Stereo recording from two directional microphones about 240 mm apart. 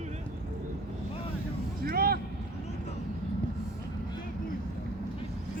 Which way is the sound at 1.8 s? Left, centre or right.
Right.